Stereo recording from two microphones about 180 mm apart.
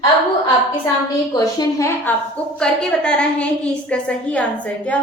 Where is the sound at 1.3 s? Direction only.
20° left (ahead or behind).